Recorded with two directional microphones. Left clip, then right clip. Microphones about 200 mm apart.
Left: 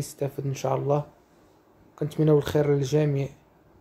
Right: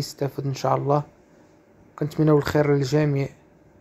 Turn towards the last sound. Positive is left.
turn(degrees=-15)  # may be behind; listen again after turning